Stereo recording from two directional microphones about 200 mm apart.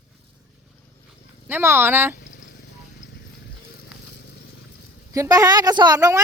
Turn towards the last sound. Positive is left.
turn(degrees=-15)  # may be behind; listen again after turning